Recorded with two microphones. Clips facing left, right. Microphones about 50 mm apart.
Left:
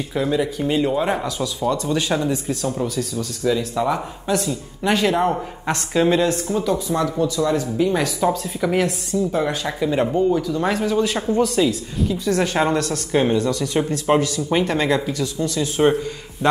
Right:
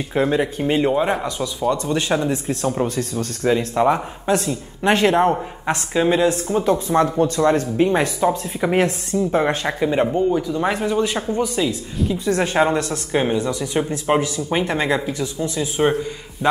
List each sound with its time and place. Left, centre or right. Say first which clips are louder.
0.4 s speech: right 1 dB; right
0.9 s speech: right 1 dB; centre
1.8 s speech: right 1 dB; right
5.7 s speech: even; centre
6.6 s speech: right 6 dB; right
8.3 s speech: right 1 dB; right
8.8 s speech: right 1 dB; right
9.8 s speech: even; centre
10.0 s speech: even; centre
10.4 s speech: even; right
12.3 s speech: right 2 dB; right
13.1 s speech: left 1 dB; centre
15.8 s a man's voice: left 1 dB; centre